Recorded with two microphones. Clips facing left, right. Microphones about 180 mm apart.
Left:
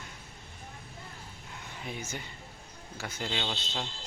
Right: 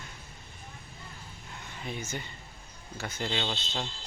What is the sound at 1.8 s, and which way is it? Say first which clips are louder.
Speech: right 2 dB; 10° left (ahead or behind).